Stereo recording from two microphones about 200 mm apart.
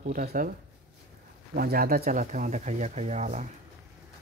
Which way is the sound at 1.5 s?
50° right (ahead or behind).